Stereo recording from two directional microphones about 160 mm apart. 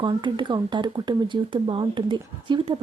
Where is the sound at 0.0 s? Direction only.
30° right (ahead or behind).